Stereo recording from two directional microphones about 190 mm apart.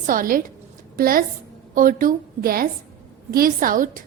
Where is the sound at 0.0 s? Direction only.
50° right (ahead or behind).